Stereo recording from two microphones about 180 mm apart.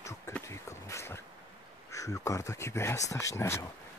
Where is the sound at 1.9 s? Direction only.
15° left (ahead or behind).